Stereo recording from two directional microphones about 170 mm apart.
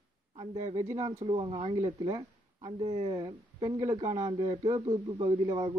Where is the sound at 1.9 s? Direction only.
20° right (ahead or behind).